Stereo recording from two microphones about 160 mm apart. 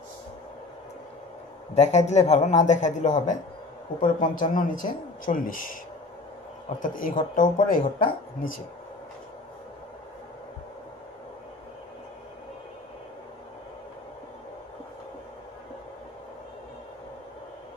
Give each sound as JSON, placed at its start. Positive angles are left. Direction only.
{"t": 1.8, "sound": "speech", "side_deg": 45}
{"t": 6.8, "sound": "speech", "side_deg": 55}